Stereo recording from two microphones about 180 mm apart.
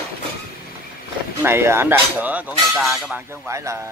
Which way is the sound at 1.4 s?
15° right (ahead or behind).